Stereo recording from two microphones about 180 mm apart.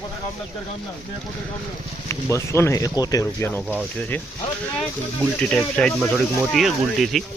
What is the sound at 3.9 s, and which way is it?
Speech, 10° left (ahead or behind).